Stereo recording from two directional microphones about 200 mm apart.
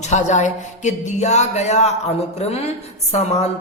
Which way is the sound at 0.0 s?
35° left (ahead or behind).